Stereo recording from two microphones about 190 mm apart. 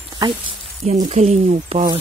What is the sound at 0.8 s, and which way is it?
Speech, 35° right (ahead or behind).